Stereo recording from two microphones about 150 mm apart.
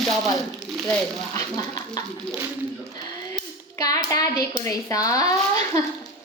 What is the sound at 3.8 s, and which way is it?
A woman's voice, 25° left (ahead or behind).